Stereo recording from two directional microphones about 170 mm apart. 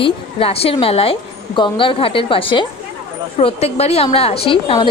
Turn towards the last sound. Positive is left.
turn(degrees=30)  # may be behind; listen again after turning